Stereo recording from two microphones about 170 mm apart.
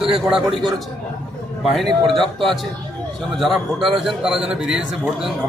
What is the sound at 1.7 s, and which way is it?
A man's voice, centre (ahead or behind).